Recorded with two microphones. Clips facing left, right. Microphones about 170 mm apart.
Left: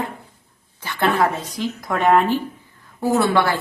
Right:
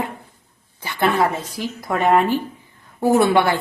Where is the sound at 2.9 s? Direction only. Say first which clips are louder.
Right 3 dB; 20° right (ahead or behind).